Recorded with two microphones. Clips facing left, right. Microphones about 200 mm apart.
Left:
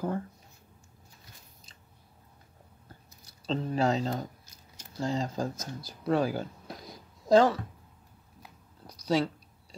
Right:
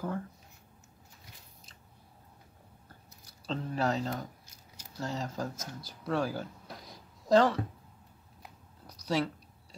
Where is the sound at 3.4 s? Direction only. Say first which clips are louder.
Left 4 dB; 25° left (ahead or behind).